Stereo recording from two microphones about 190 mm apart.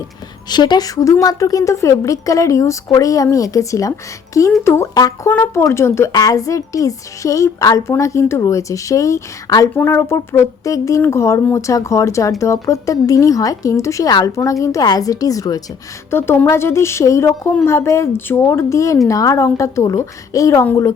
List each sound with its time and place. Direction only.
0.5 s a woman's voice: 20° left (ahead or behind)